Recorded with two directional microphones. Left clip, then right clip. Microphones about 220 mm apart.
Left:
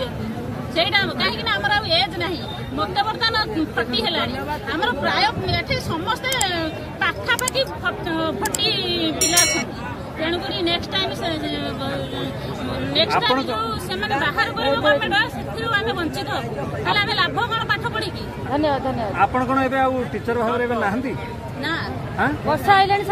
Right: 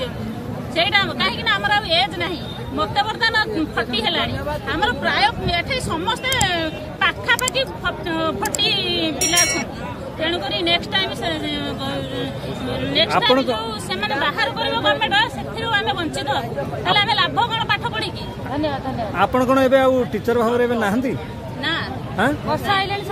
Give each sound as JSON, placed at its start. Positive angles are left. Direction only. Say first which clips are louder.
{"t": 0.7, "sound": "speech", "louder": "right 1 dB", "side_deg": 0}
{"t": 18.5, "sound": "speech", "louder": "left 3 dB", "side_deg": 45}
{"t": 19.1, "sound": "a man's voice", "louder": "right 3 dB", "side_deg": -60}
{"t": 22.5, "sound": "a woman's voice", "louder": "left 4 dB", "side_deg": 50}